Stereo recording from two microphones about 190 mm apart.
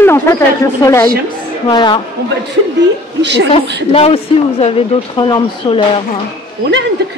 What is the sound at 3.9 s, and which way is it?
A man's voice, 30° left (ahead or behind).